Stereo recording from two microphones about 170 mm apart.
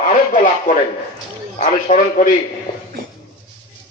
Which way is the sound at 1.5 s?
45° left (ahead or behind).